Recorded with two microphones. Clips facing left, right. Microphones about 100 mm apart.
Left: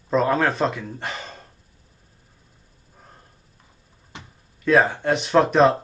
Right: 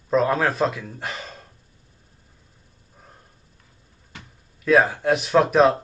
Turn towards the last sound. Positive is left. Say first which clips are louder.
# even
turn(degrees=0)  # may be behind; listen again after turning